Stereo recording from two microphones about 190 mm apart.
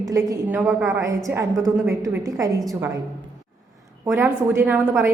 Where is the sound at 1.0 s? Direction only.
15° right (ahead or behind).